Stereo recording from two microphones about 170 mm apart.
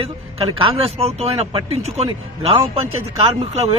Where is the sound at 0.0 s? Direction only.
35° right (ahead or behind).